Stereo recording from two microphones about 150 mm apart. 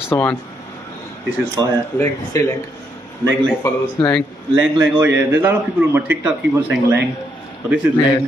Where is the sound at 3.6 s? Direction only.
15° left (ahead or behind).